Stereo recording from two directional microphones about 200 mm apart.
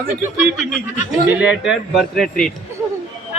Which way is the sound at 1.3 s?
5° right (ahead or behind).